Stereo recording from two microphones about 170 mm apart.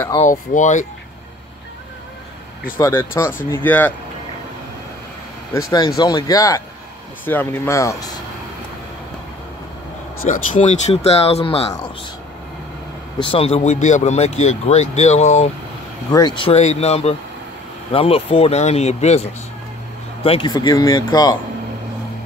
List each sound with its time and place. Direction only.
0.2 s speech: 50° left (ahead or behind)
2.8 s speech: 15° left (ahead or behind)
5.5 s speech: 20° left (ahead or behind)
10.2 s speech: 50° left (ahead or behind); by 11.7 s 35° left (ahead or behind)
13.2 s speech: 35° left (ahead or behind)
16.1 s speech: 25° left (ahead or behind); by 19.2 s 40° left (ahead or behind)
20.2 s speech: 30° left (ahead or behind)